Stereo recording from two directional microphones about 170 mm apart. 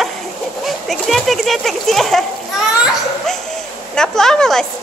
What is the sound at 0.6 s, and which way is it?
A woman's voice, centre (ahead or behind).